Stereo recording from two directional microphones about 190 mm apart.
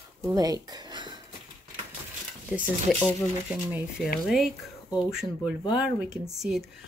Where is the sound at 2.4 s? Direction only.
5° right (ahead or behind).